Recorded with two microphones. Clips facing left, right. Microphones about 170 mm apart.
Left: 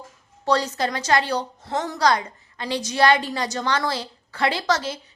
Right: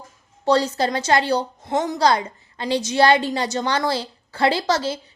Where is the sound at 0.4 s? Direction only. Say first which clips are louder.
Right 3 dB; 30° right (ahead or behind).